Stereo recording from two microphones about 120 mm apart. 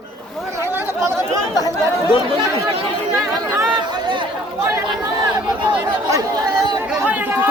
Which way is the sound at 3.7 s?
40° right (ahead or behind).